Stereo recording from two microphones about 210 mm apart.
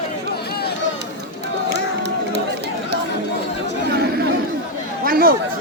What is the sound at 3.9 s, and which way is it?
Chatter, 50° right (ahead or behind).